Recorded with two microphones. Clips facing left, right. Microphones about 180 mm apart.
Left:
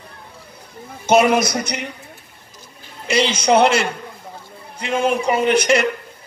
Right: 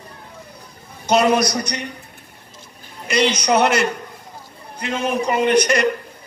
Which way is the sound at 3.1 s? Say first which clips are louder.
Left 1 dB; 25° left (ahead or behind).